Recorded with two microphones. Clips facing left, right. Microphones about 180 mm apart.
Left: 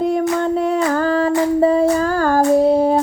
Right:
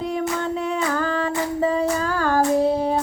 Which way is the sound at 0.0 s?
45° left (ahead or behind).